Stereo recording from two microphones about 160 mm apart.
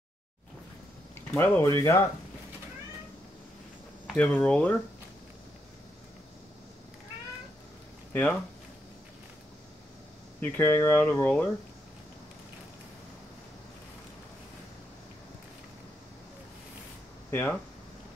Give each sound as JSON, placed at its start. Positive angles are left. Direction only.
{"t": 1.1, "sound": "speech", "side_deg": 15}
{"t": 4.1, "sound": "speech", "side_deg": 5}
{"t": 8.1, "sound": "speech", "side_deg": 10}
{"t": 10.4, "sound": "speech", "side_deg": 10}
{"t": 17.3, "sound": "speech", "side_deg": 10}